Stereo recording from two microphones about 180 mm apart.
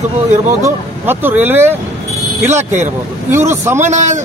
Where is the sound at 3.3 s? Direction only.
15° right (ahead or behind).